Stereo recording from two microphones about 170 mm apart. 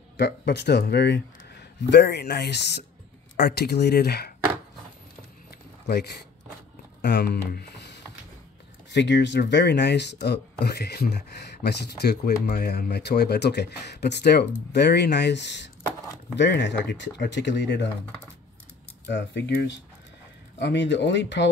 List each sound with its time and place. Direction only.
0.2 s speech: 80° left
5.9 s speech: 75° left (ahead or behind); by 17.8 s 90° left
19.0 s speech: 90° left